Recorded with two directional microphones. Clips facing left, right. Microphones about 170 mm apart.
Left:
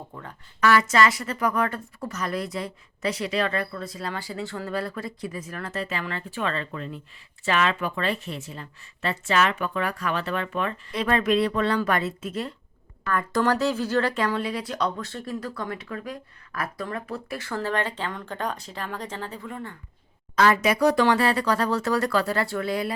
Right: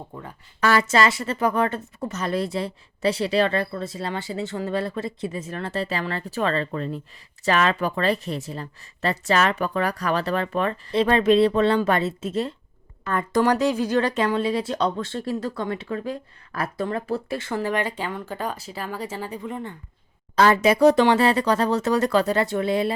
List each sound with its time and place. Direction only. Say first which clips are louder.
0.1 s speech: right 3 dB; 10° right (ahead or behind)
0.6 s speech: even; 30° right (ahead or behind)
20.3 s speech: right 3 dB; 30° right (ahead or behind)